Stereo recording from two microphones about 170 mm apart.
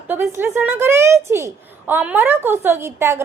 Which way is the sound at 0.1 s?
15° right (ahead or behind).